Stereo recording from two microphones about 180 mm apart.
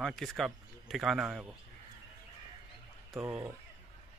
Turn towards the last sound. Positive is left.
turn(degrees=-5)  # may be behind; listen again after turning